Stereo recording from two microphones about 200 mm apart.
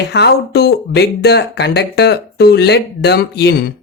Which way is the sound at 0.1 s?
55° left (ahead or behind).